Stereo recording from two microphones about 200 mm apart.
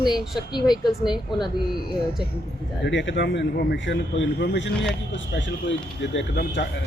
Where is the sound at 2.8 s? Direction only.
60° left (ahead or behind).